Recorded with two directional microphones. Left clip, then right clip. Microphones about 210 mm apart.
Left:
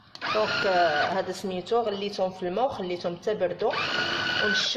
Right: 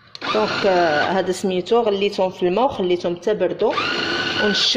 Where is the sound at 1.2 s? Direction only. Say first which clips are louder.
Right 9 dB; 35° right (ahead or behind).